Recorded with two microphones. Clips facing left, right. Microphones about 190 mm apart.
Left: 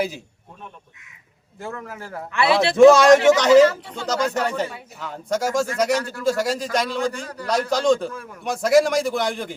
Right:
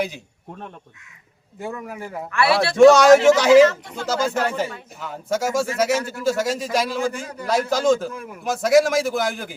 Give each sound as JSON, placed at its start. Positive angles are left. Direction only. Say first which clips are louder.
{"t": 1.5, "sound": "speech", "louder": "right 2 dB", "side_deg": -15}
{"t": 2.3, "sound": "a man's voice", "louder": "left 1 dB", "side_deg": 20}
{"t": 2.7, "sound": "a man's voice", "louder": "even", "side_deg": 0}
{"t": 8.1, "sound": "a man's voice", "louder": "right 2 dB", "side_deg": -20}
{"t": 8.4, "sound": "a man's voice", "louder": "even", "side_deg": 0}